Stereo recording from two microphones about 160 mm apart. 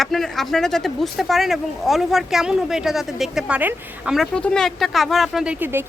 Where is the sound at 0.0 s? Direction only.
Centre (ahead or behind).